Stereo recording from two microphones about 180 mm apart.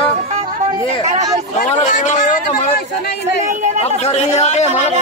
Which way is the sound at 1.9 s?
40° left (ahead or behind).